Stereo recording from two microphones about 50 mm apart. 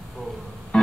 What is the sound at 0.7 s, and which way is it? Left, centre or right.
Music, centre.